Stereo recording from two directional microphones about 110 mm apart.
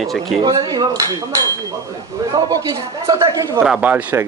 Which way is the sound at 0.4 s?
45° right (ahead or behind).